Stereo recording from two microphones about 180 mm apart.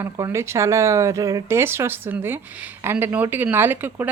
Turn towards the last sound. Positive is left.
turn(degrees=-10)  # may be behind; listen again after turning